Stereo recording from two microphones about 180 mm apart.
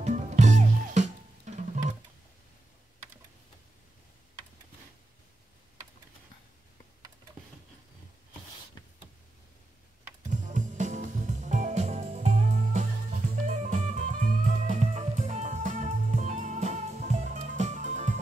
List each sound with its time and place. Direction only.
0.0 s music: 40° right (ahead or behind)
10.3 s music: 45° right (ahead or behind)